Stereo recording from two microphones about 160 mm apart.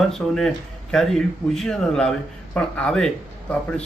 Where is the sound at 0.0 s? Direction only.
Centre (ahead or behind).